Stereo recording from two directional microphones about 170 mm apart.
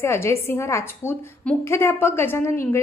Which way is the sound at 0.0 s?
15° left (ahead or behind).